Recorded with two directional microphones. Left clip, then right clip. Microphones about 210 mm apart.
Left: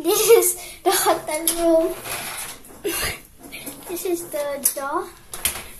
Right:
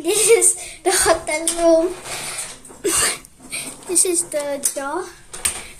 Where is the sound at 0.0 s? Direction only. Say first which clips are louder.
Even; 10° right (ahead or behind).